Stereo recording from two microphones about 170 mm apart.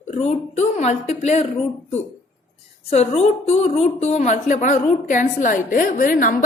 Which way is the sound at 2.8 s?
40° left (ahead or behind).